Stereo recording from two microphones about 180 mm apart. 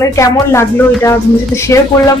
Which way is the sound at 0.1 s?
15° left (ahead or behind).